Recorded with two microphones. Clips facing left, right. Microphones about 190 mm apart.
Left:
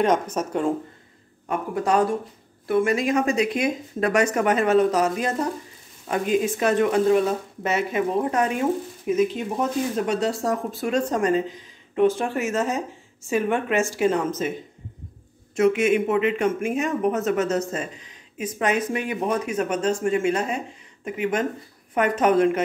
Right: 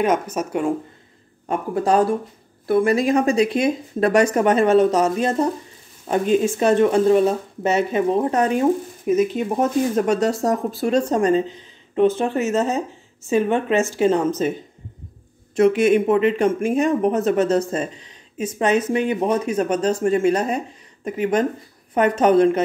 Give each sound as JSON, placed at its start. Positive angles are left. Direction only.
{"t": 0.0, "sound": "speech", "side_deg": -5}
{"t": 1.5, "sound": "speech", "side_deg": -30}
{"t": 15.5, "sound": "speech", "side_deg": -35}